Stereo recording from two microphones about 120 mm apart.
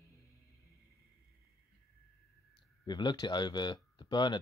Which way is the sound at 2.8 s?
35° left (ahead or behind).